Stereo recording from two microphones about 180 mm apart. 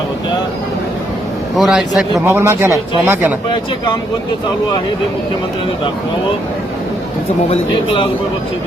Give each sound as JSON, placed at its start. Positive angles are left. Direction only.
{"t": 1.5, "sound": "a man's voice", "side_deg": 0}
{"t": 7.5, "sound": "a man's voice", "side_deg": 30}